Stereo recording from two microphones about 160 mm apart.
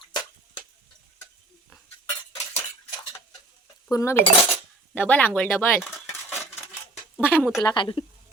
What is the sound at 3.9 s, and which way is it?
Speech, 15° left (ahead or behind).